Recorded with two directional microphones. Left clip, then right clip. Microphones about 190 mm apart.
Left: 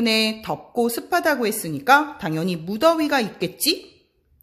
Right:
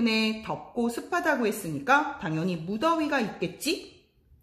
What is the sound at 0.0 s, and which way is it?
Speech, 40° left (ahead or behind).